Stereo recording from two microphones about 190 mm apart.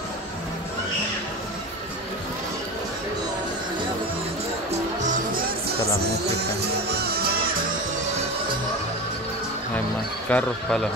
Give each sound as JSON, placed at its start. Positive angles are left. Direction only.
{"t": 6.2, "sound": "music", "side_deg": -60}
{"t": 10.3, "sound": "a man's voice", "side_deg": 5}